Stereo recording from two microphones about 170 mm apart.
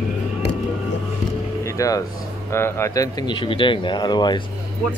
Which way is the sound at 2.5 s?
15° left (ahead or behind).